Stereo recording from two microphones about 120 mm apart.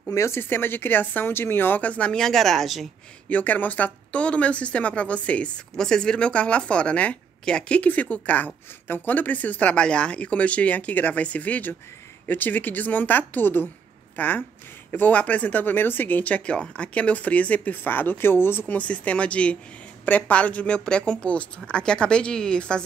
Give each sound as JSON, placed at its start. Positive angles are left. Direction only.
{"t": 0.1, "sound": "speech", "side_deg": 25}
{"t": 3.3, "sound": "speech", "side_deg": 15}